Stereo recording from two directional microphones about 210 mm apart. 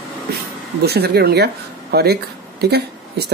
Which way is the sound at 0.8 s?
50° right (ahead or behind).